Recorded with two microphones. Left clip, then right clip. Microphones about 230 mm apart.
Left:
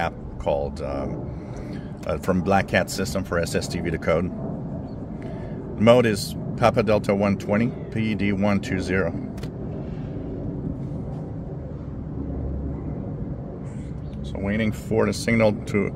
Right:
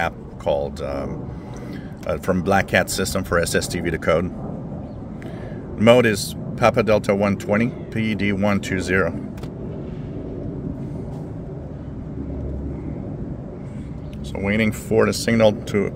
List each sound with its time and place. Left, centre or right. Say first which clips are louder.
0.0 s speech: right 3 dB; centre
5.8 s speech: right 2 dB; centre
14.3 s speech: right 5 dB; right; by 15.9 s centre